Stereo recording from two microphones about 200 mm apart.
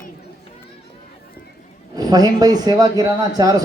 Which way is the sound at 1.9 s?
20° right (ahead or behind).